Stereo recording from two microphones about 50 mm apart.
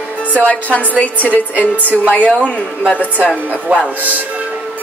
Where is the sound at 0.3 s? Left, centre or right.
Left.